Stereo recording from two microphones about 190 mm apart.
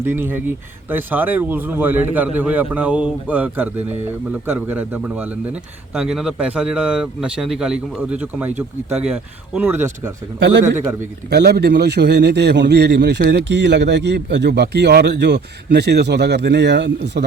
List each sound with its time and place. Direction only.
0.0 s a man's voice: 10° right (ahead or behind)
11.3 s a man's voice: 60° right (ahead or behind)